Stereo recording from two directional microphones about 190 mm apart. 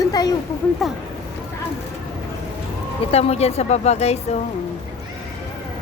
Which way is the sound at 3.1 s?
30° left (ahead or behind).